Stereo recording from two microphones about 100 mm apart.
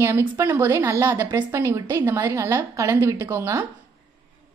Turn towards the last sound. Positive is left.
turn(degrees=-30)  # may be behind; listen again after turning